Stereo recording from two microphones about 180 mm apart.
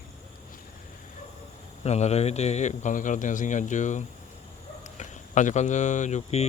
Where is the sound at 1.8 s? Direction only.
40° left (ahead or behind).